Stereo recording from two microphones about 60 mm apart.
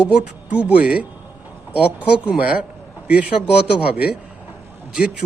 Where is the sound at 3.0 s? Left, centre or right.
Centre.